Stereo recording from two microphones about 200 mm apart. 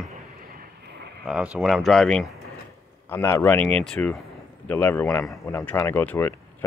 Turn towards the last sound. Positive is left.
turn(degrees=10)  # may be behind; listen again after turning